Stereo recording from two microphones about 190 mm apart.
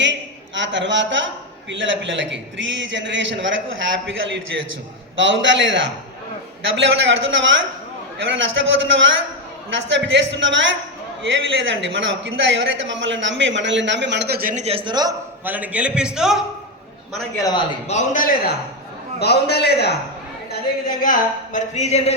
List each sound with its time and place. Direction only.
0.0 s a man's voice: 70° right (ahead or behind); by 14.6 s 50° right (ahead or behind)
14.6 s a man's voice: 30° right (ahead or behind)
15.4 s a man's voice: 10° right (ahead or behind)
17.3 s a man's voice: 20° left (ahead or behind)
17.8 s a woman's voice: 40° left (ahead or behind)
19.2 s a man's voice: 60° left (ahead or behind)
20.5 s a woman's voice: 50° left (ahead or behind)